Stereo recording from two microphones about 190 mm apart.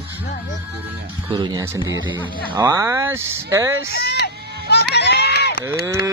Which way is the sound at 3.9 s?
55° left (ahead or behind).